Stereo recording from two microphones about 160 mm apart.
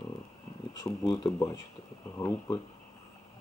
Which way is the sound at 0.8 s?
25° left (ahead or behind).